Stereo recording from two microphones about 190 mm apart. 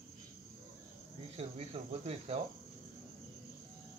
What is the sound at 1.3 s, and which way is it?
Speech, 30° right (ahead or behind).